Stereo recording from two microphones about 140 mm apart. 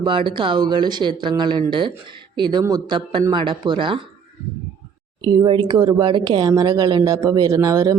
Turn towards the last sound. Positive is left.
turn(degrees=-25)  # may be behind; listen again after turning